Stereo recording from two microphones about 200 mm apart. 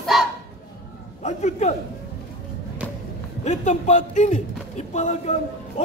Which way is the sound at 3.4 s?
35° left (ahead or behind).